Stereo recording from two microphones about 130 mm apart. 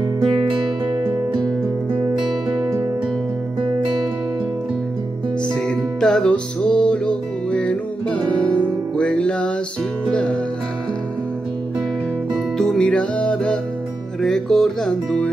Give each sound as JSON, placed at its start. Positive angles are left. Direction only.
{"t": 5.7, "sound": "music", "side_deg": 5}
{"t": 12.5, "sound": "music", "side_deg": 5}